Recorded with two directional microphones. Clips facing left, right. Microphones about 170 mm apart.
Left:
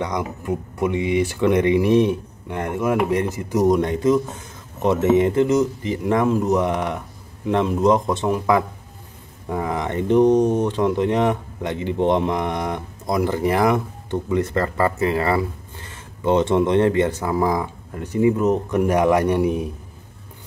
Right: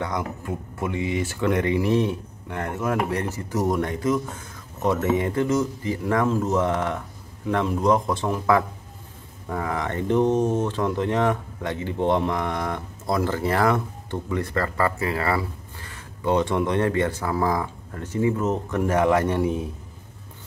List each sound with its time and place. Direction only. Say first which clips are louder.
0.5 s speech: left 6 dB; 15° left (ahead or behind)